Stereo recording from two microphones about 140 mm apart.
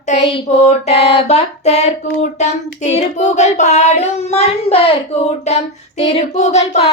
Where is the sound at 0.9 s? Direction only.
45° left (ahead or behind).